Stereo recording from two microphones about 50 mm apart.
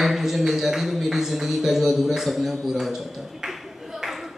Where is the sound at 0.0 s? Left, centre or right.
Centre.